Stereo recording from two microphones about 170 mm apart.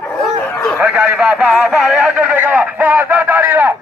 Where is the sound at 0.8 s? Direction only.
10° right (ahead or behind).